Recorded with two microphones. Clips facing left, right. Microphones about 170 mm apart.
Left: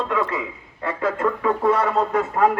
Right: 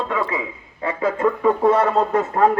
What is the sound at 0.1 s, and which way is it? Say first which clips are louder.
A man's voice: even; 10° right (ahead or behind).